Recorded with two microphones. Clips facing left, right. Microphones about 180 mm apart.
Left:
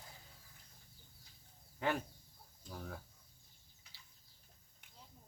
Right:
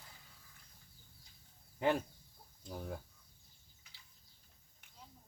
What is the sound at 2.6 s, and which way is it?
Chicken, 25° right (ahead or behind).